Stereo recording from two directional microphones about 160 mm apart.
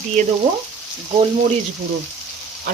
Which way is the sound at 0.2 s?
50° right (ahead or behind).